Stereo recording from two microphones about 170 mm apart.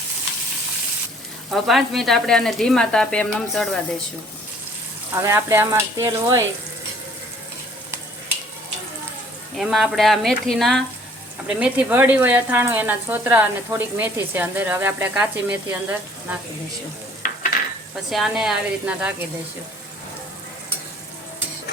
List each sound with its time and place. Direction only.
1.5 s speech: centre (ahead or behind)
5.2 s speech: 15° right (ahead or behind)
9.6 s speech: centre (ahead or behind)
18.1 s speech: centre (ahead or behind)